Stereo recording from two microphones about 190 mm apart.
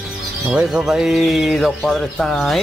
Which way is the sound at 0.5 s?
5° right (ahead or behind).